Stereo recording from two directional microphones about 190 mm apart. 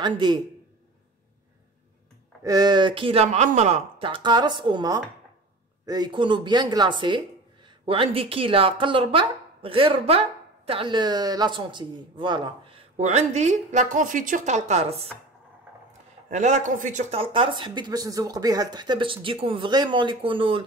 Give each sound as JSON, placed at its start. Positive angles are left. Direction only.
{"t": 0.0, "sound": "speech", "side_deg": -25}
{"t": 2.4, "sound": "speech", "side_deg": -20}
{"t": 16.3, "sound": "speech", "side_deg": -40}